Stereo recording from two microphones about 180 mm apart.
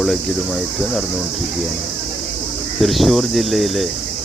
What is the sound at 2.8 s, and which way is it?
Speech, centre (ahead or behind).